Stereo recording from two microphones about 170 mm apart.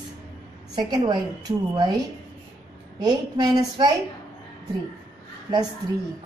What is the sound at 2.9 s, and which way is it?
Speech, 25° right (ahead or behind).